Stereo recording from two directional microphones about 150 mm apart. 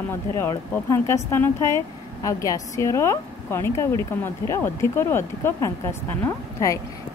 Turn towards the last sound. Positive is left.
turn(degrees=20)  # may be behind; listen again after turning